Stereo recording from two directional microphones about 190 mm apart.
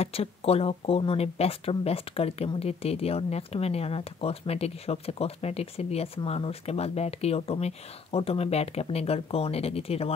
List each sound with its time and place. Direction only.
0.0 s speech: 30° left (ahead or behind)